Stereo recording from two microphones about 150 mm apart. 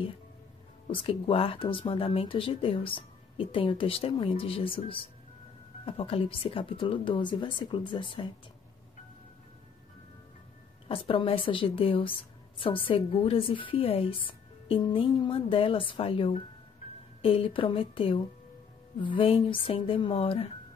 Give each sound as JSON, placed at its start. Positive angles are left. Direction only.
{"t": 1.0, "sound": "a woman's voice", "side_deg": 40}
{"t": 10.9, "sound": "a woman's voice", "side_deg": 40}